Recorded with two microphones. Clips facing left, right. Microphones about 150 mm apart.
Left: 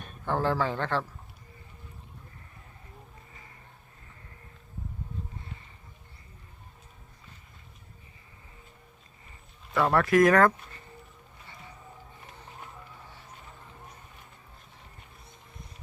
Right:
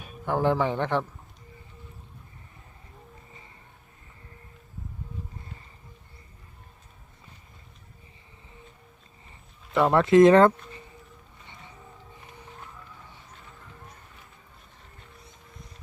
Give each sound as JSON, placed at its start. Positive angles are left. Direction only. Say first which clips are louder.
{"t": 0.0, "sound": "speech", "louder": "right 3 dB", "side_deg": -10}
{"t": 9.7, "sound": "speech", "louder": "right 4 dB", "side_deg": -20}